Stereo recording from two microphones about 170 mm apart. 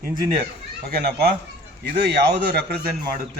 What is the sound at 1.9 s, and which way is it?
Speech, 75° right (ahead or behind).